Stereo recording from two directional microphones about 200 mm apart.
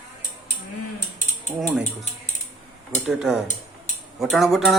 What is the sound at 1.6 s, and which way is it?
Speech, centre (ahead or behind).